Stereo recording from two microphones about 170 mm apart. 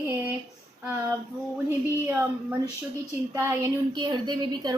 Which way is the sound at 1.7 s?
15° right (ahead or behind).